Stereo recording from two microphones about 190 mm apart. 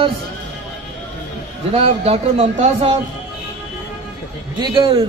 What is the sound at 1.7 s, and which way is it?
A man's voice, 30° right (ahead or behind).